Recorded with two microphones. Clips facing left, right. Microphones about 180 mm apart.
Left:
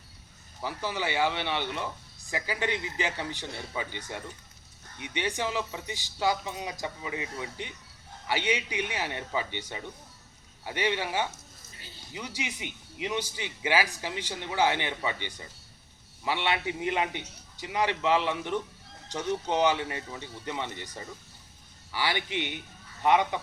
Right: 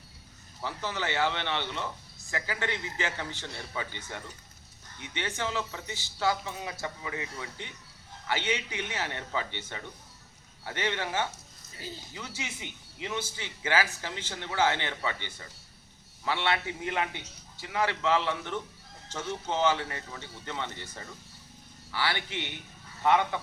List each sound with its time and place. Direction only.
0.6 s speech: 10° left (ahead or behind)